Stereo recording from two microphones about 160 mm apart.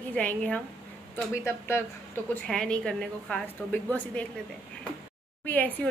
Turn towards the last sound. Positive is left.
turn(degrees=10)  # may be behind; listen again after turning